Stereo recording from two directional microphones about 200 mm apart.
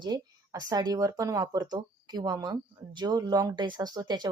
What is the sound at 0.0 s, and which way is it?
Speech, 20° right (ahead or behind).